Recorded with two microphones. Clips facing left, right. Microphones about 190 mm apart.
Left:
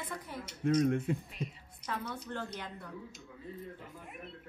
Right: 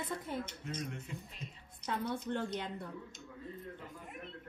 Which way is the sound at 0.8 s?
55° left (ahead or behind).